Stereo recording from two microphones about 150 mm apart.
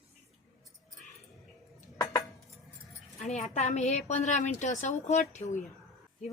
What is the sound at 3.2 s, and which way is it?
A woman's voice, 50° left (ahead or behind).